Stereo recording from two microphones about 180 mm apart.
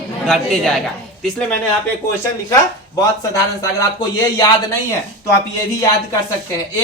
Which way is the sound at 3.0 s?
20° left (ahead or behind).